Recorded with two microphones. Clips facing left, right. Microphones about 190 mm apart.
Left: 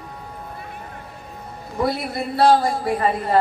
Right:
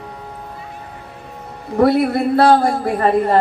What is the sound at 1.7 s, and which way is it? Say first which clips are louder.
A man's voice: right 10 dB; 60° right (ahead or behind).